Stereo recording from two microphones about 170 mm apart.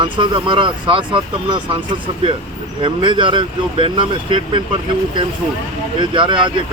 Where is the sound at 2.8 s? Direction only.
30° right (ahead or behind).